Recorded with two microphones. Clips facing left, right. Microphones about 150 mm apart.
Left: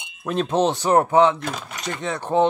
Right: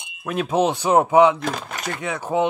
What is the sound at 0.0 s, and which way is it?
Speech, 5° right (ahead or behind).